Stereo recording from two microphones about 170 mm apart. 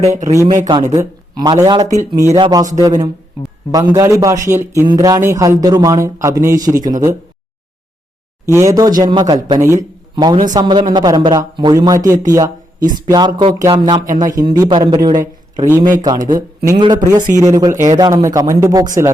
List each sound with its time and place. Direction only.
0.0 s speech: 20° right (ahead or behind)
8.4 s speech: 15° right (ahead or behind)